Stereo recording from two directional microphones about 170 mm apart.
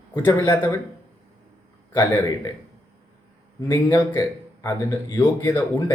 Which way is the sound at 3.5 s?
15° left (ahead or behind).